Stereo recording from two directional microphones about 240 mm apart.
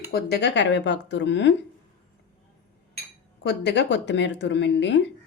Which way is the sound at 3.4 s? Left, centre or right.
Left.